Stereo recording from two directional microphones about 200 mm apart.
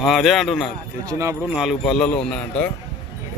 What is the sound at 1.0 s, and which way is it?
Speech, 15° right (ahead or behind).